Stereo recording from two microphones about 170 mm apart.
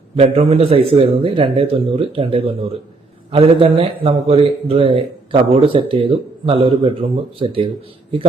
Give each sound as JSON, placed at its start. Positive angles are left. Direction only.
{"t": 0.2, "sound": "a man's voice", "side_deg": -35}